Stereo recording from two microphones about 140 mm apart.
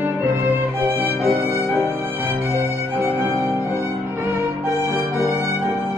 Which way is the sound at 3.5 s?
20° right (ahead or behind).